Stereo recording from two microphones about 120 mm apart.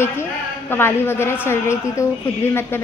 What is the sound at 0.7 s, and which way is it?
A woman's voice, 20° left (ahead or behind).